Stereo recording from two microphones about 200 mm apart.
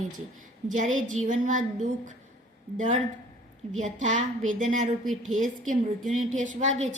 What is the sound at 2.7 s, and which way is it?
A woman's voice, 40° right (ahead or behind).